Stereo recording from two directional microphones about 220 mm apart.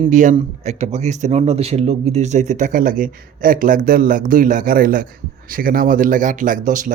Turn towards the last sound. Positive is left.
turn(degrees=-35)  # may be behind; listen again after turning